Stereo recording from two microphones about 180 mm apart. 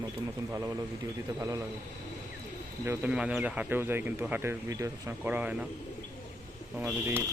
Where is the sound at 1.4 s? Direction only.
20° right (ahead or behind).